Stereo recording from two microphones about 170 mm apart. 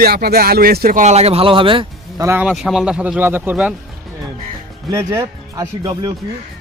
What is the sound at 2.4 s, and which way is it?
Speech, centre (ahead or behind).